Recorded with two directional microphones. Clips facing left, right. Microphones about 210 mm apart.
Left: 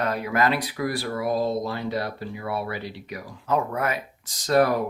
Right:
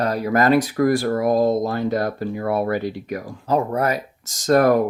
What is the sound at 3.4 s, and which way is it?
Speech, 35° right (ahead or behind).